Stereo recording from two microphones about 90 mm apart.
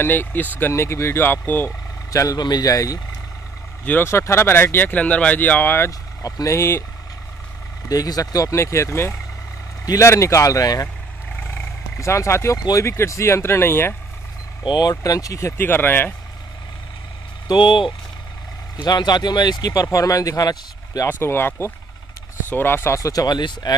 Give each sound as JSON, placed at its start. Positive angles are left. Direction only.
{"t": 0.0, "sound": "speech", "side_deg": 20}
{"t": 2.0, "sound": "speech", "side_deg": 40}
{"t": 3.8, "sound": "speech", "side_deg": 25}
{"t": 5.9, "sound": "speech", "side_deg": 40}
{"t": 7.9, "sound": "speech", "side_deg": 40}
{"t": 12.0, "sound": "speech", "side_deg": 30}
{"t": 14.6, "sound": "speech", "side_deg": 50}
{"t": 17.5, "sound": "speech", "side_deg": 65}
{"t": 18.8, "sound": "speech", "side_deg": 55}
{"t": 21.1, "sound": "speech", "side_deg": 25}